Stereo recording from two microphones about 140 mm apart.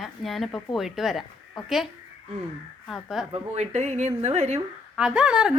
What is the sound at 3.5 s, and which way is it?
Speech, 55° right (ahead or behind).